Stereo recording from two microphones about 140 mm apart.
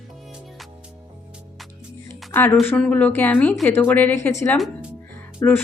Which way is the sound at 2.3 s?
15° left (ahead or behind).